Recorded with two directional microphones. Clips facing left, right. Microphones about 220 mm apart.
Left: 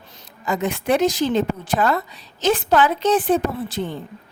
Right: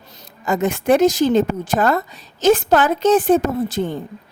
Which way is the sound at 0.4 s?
45° right (ahead or behind).